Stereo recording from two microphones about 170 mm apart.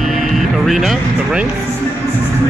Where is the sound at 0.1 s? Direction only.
Centre (ahead or behind).